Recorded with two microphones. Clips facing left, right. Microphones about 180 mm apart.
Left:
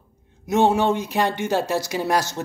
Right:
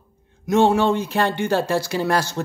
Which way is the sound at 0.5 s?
20° left (ahead or behind).